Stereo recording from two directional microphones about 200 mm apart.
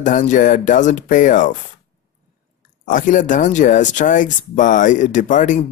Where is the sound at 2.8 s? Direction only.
40° left (ahead or behind).